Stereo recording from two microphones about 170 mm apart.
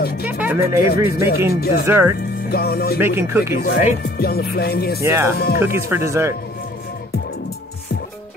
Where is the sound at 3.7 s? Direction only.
65° left (ahead or behind).